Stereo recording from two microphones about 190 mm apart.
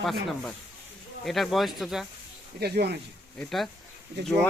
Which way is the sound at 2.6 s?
60° right (ahead or behind).